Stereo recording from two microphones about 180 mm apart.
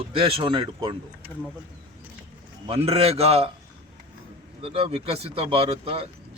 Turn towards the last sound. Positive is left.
turn(degrees=-30)  # may be behind; listen again after turning